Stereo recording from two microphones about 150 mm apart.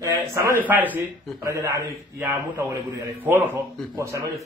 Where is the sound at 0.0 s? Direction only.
20° right (ahead or behind).